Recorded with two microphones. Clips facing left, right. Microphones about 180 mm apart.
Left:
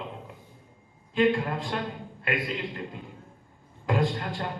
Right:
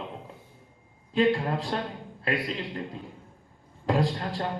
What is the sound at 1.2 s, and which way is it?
A man's voice, 35° right (ahead or behind).